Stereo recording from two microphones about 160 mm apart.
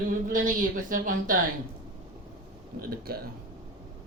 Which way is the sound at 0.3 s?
55° right (ahead or behind).